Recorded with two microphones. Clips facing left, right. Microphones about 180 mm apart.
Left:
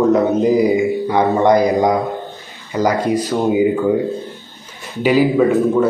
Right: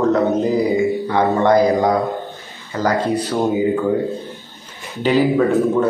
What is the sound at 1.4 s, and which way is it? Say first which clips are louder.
Speech: even; 20° left (ahead or behind).